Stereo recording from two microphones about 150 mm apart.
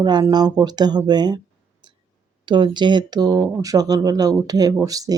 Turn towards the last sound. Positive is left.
turn(degrees=-25)  # may be behind; listen again after turning